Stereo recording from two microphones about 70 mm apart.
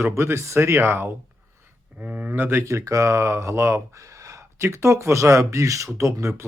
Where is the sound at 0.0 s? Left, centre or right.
Right.